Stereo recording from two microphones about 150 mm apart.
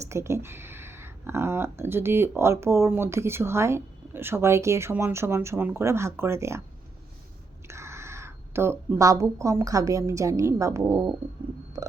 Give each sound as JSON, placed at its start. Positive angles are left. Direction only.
{"t": 0.0, "sound": "speech", "side_deg": -20}
{"t": 7.7, "sound": "speech", "side_deg": -20}